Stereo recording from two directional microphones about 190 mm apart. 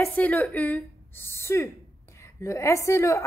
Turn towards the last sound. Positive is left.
turn(degrees=15)  # may be behind; listen again after turning